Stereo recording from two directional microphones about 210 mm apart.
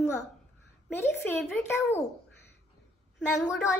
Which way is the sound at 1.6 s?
10° left (ahead or behind).